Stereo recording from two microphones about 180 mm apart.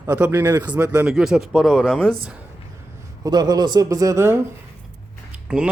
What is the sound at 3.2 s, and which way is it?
A man's voice, 20° right (ahead or behind).